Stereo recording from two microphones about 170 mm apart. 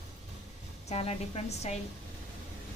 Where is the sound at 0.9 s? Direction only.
35° left (ahead or behind).